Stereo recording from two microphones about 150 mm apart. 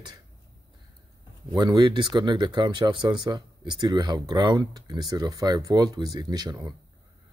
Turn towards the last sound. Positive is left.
turn(degrees=-25)  # may be behind; listen again after turning